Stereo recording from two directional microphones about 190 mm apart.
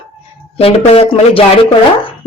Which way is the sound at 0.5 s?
30° left (ahead or behind).